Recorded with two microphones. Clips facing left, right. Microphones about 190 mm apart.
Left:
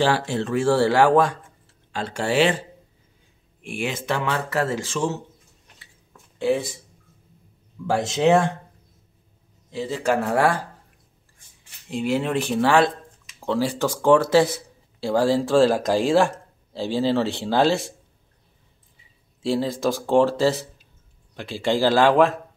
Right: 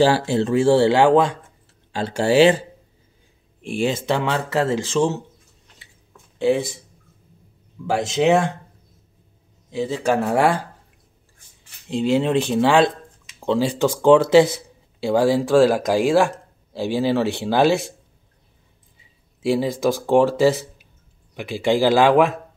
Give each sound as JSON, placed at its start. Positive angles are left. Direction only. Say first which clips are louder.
{"t": 0.0, "sound": "speech", "louder": "right 5 dB", "side_deg": -30}
{"t": 1.9, "sound": "speech", "louder": "right 5 dB", "side_deg": -35}
{"t": 3.6, "sound": "speech", "louder": "right 5 dB", "side_deg": -30}
{"t": 6.3, "sound": "speech", "louder": "right 3 dB", "side_deg": -20}
{"t": 7.8, "sound": "speech", "louder": "right 1 dB", "side_deg": -10}
{"t": 9.7, "sound": "speech", "louder": "right 2 dB", "side_deg": -20}
{"t": 11.9, "sound": "speech", "louder": "right 4 dB", "side_deg": -25}
{"t": 19.4, "sound": "speech", "louder": "right 3 dB", "side_deg": -15}